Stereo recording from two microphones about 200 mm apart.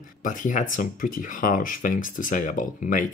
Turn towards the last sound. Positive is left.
turn(degrees=40)  # may be behind; listen again after turning